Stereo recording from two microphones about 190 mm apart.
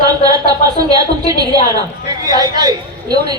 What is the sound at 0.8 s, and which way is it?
A woman's voice, 20° right (ahead or behind).